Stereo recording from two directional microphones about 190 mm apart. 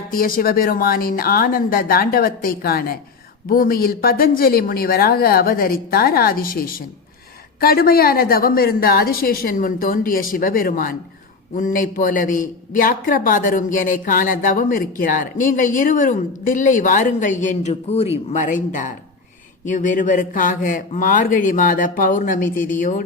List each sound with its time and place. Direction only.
0.1 s a man's voice: 50° left (ahead or behind)